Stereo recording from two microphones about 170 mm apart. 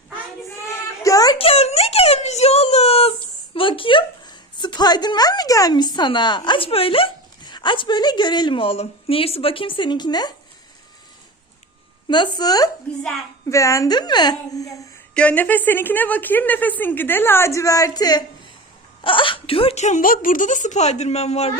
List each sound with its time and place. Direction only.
1.0 s a sound: 20° left (ahead or behind)
1.4 s whimper: 35° left (ahead or behind)
3.5 s a woman's voice: 30° left (ahead or behind)
12.0 s a woman's voice: 25° left (ahead or behind)
15.1 s a woman's voice: 10° left (ahead or behind); by 21.6 s 40° left (ahead or behind)